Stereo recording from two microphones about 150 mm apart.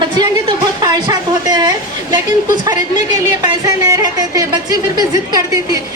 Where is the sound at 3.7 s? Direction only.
25° right (ahead or behind).